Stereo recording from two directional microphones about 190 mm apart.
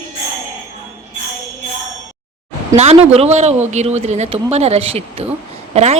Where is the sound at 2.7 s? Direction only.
35° right (ahead or behind).